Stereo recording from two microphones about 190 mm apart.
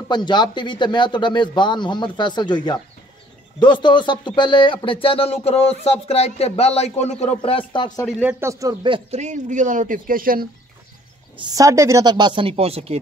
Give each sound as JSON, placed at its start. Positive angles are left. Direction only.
{"t": 0.1, "sound": "speech", "side_deg": 25}
{"t": 8.2, "sound": "a man's voice", "side_deg": -10}
{"t": 11.3, "sound": "speech", "side_deg": -20}